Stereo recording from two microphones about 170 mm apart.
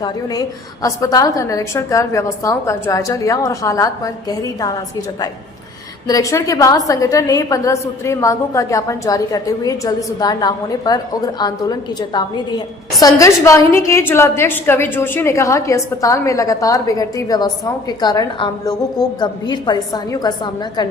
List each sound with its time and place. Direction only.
0.0 s a woman's voice: 20° left (ahead or behind)